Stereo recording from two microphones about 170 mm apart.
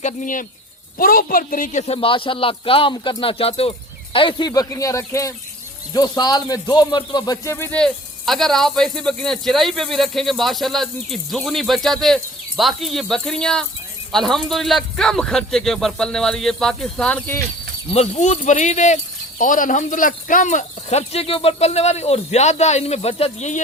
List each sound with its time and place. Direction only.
0.0 s a man's voice: 50° left (ahead or behind); by 17.4 s 10° left (ahead or behind)
17.9 s a man's voice: 40° left (ahead or behind)